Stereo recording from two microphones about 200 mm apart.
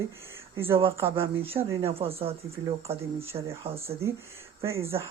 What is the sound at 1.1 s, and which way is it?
Speech, 30° right (ahead or behind).